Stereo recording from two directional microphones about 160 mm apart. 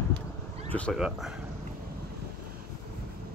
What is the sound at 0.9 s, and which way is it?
Speech, 5° right (ahead or behind).